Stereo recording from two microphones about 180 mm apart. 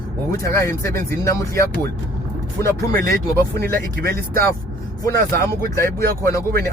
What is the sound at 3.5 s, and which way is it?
Speech, 60° right (ahead or behind).